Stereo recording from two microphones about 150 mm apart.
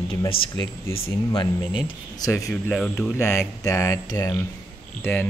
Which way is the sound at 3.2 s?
20° left (ahead or behind).